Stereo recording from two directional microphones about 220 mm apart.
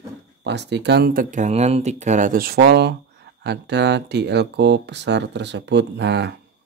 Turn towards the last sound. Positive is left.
turn(degrees=-50)  # may be behind; listen again after turning